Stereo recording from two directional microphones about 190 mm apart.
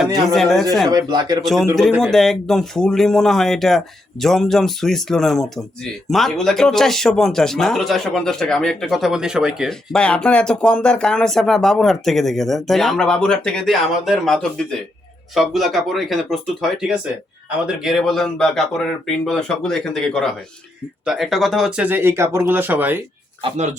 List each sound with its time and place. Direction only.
0.3 s speech: centre (ahead or behind)
0.9 s speech: 20° right (ahead or behind)
1.4 s speech: centre (ahead or behind)